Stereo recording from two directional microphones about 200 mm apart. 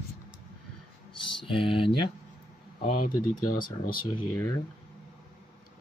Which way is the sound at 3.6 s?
45° left (ahead or behind).